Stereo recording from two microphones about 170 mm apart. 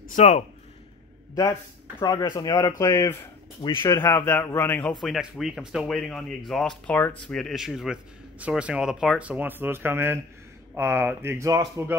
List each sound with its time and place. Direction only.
0.1 s speech: 45° left (ahead or behind)
2.0 s a man's voice: 20° left (ahead or behind)
5.0 s speech: centre (ahead or behind); by 11.8 s 20° right (ahead or behind)